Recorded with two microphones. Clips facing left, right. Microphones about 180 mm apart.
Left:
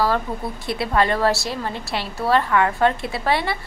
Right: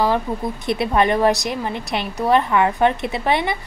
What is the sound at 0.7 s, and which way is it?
A woman's voice, 20° right (ahead or behind).